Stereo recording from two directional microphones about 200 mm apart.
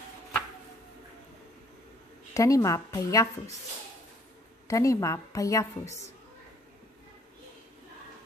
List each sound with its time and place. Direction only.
2.3 s a woman's voice: 15° left (ahead or behind)
4.6 s a woman's voice: 15° left (ahead or behind)